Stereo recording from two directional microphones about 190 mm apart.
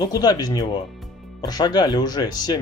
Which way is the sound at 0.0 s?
20° left (ahead or behind).